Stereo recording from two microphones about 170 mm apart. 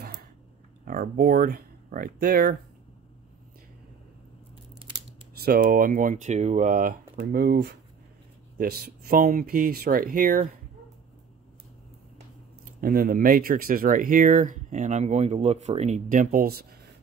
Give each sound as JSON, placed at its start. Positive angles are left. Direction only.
{"t": 0.8, "sound": "speech", "side_deg": -55}
{"t": 5.4, "sound": "speech", "side_deg": -60}
{"t": 8.5, "sound": "speech", "side_deg": -60}
{"t": 12.8, "sound": "speech", "side_deg": -60}